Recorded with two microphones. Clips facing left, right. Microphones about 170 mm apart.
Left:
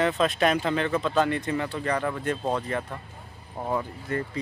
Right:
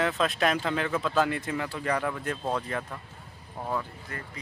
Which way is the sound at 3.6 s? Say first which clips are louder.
Left 4 dB; 20° left (ahead or behind).